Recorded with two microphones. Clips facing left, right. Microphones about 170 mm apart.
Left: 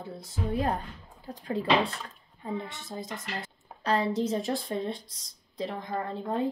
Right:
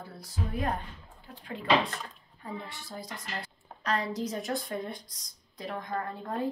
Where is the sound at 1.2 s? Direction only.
40° left (ahead or behind).